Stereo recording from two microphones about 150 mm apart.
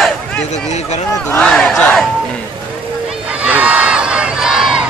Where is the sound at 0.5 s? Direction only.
50° left (ahead or behind).